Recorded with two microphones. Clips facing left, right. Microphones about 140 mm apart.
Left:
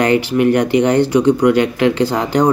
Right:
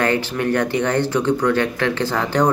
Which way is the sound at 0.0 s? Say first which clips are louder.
Left 6 dB; 15° left (ahead or behind).